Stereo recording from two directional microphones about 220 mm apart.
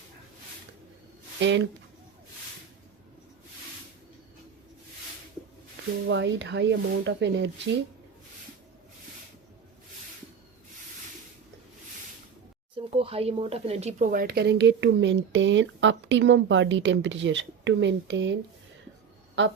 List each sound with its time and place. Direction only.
1.4 s speech: 55° right (ahead or behind)
6.1 s speech: 55° right (ahead or behind)
12.7 s speech: 25° right (ahead or behind); by 18.3 s 55° right (ahead or behind)